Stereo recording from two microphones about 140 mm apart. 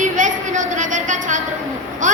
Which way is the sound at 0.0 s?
65° right (ahead or behind).